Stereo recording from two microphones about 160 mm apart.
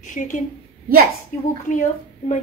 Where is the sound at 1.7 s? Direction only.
50° left (ahead or behind).